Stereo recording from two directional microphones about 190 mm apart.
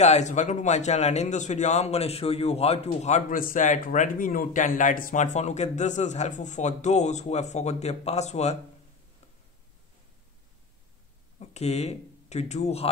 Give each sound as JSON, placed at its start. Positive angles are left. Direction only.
{"t": 0.0, "sound": "a man's voice", "side_deg": 35}
{"t": 11.3, "sound": "speech", "side_deg": 35}